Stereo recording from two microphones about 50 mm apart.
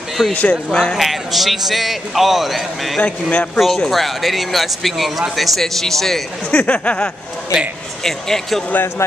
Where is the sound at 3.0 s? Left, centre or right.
Left.